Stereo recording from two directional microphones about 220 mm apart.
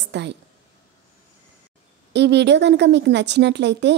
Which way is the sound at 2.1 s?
50° right (ahead or behind).